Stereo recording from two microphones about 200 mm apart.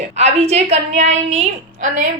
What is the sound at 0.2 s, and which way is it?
A woman's voice, 35° right (ahead or behind).